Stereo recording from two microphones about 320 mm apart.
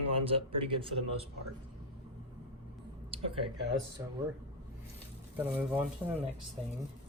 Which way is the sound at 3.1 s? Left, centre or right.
Centre.